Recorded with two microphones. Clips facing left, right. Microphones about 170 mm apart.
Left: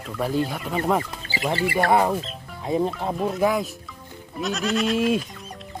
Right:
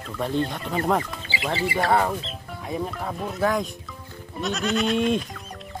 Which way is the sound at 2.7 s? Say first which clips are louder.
Left 6 dB; 25° left (ahead or behind).